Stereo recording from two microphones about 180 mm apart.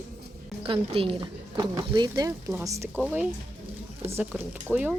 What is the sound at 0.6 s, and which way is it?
Speech, 30° right (ahead or behind).